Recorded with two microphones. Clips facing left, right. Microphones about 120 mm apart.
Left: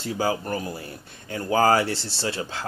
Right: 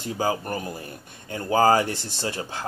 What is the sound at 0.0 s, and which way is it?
Speech, 20° right (ahead or behind).